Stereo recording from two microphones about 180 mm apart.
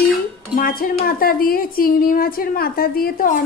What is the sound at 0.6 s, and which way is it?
A woman's voice, 55° left (ahead or behind).